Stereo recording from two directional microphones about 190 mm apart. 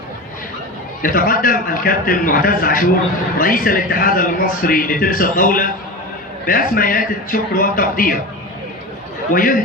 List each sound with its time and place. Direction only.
1.0 s a man's voice: 50° left (ahead or behind)
9.3 s a man's voice: 45° left (ahead or behind)